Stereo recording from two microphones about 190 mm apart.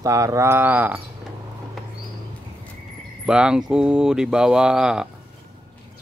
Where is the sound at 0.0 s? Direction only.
15° right (ahead or behind).